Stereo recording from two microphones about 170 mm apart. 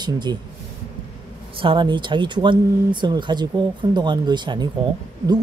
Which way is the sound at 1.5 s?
30° right (ahead or behind).